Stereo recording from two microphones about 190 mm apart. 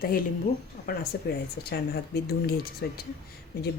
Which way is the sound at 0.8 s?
50° left (ahead or behind).